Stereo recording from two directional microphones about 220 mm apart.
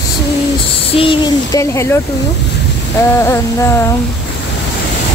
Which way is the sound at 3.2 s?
10° left (ahead or behind).